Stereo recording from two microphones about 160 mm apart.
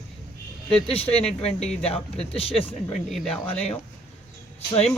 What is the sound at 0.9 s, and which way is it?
Speech, 40° left (ahead or behind).